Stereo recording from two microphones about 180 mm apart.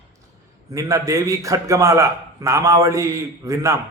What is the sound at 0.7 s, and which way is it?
Speech, 15° right (ahead or behind).